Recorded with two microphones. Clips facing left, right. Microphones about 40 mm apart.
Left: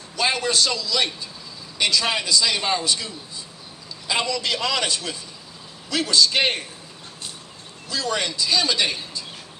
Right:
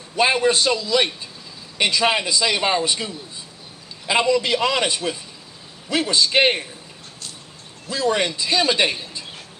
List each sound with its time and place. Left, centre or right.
0.1 s a man's voice: right
4.1 s a man's voice: right
7.9 s a man's voice: right